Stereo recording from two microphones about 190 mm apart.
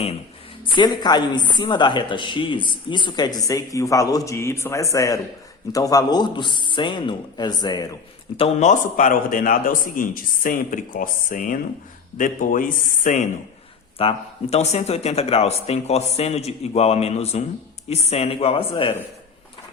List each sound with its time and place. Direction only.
0.6 s a woman's voice: 20° left (ahead or behind)
8.4 s a man's voice: 40° left (ahead or behind)
14.0 s a man's voice: 30° left (ahead or behind)